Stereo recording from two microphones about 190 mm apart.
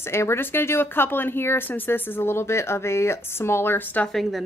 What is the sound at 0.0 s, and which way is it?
Speech, 15° left (ahead or behind).